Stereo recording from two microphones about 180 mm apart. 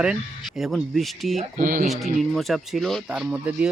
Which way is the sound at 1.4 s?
45° right (ahead or behind).